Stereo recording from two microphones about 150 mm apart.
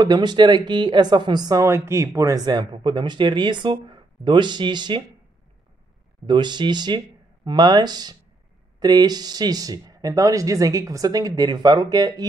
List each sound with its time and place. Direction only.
0.0 s speech: 30° right (ahead or behind)
6.2 s speech: 30° right (ahead or behind)